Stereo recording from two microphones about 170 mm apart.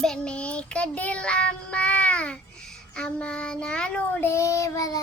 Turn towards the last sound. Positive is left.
turn(degrees=20)  # may be behind; listen again after turning